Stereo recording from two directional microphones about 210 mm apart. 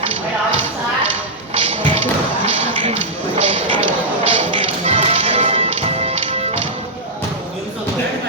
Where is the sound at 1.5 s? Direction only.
25° right (ahead or behind).